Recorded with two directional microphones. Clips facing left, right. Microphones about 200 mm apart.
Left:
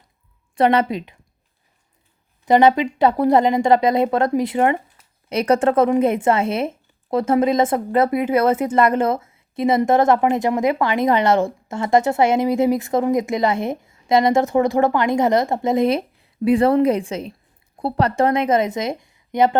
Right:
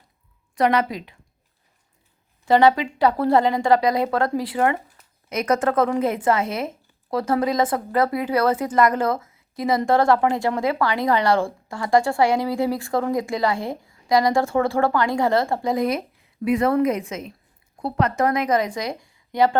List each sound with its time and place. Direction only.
0.5 s speech: 30° left (ahead or behind)
2.4 s a woman's voice: 20° left (ahead or behind)